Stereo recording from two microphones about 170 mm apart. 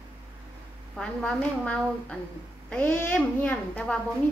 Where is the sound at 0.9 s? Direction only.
5° left (ahead or behind).